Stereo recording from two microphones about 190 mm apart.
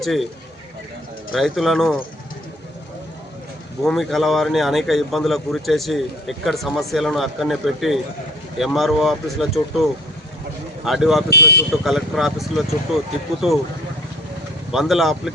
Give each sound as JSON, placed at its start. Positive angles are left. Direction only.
{"t": 0.0, "sound": "a man's voice", "side_deg": 0}
{"t": 1.3, "sound": "a man's voice", "side_deg": 0}
{"t": 3.8, "sound": "a man's voice", "side_deg": 0}
{"t": 10.8, "sound": "a man's voice", "side_deg": 0}
{"t": 11.3, "sound": "speech", "side_deg": 60}
{"t": 11.8, "sound": "a man's voice", "side_deg": 0}
{"t": 14.7, "sound": "a man's voice", "side_deg": 0}